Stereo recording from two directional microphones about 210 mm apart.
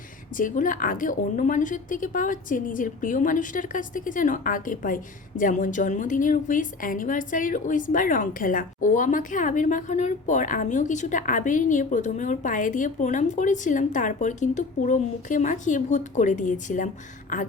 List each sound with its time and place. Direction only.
0.3 s a woman's voice: 40° left (ahead or behind)